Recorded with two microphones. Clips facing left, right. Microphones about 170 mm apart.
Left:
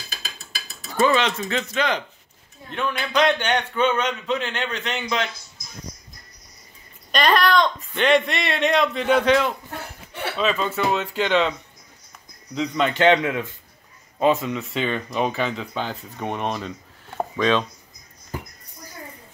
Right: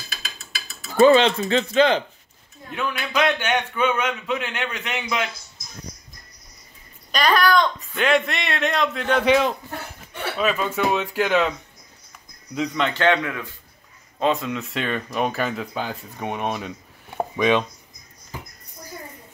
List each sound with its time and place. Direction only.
0.9 s speech: 30° right (ahead or behind)
2.7 s a man's voice: 5° right (ahead or behind)
7.1 s speech: centre (ahead or behind)
9.2 s a man's voice: 10° right (ahead or behind)
12.5 s speech: 5° left (ahead or behind)
12.9 s a man's voice: 20° left (ahead or behind)
14.2 s speech: centre (ahead or behind); by 17.6 s 15° right (ahead or behind)